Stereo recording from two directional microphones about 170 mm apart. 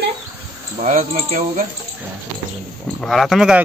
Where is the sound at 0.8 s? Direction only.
50° right (ahead or behind).